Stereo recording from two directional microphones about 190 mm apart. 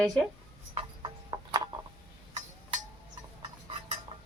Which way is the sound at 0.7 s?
25° right (ahead or behind).